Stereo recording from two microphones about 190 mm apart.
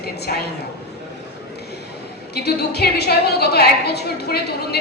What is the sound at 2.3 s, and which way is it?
A woman's voice, 60° left (ahead or behind).